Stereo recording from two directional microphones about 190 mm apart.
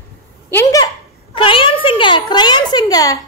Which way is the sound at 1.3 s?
25° left (ahead or behind).